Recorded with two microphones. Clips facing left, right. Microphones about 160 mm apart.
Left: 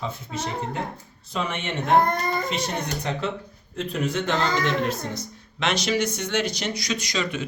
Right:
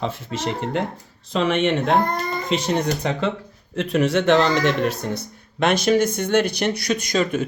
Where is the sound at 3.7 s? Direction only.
75° right (ahead or behind).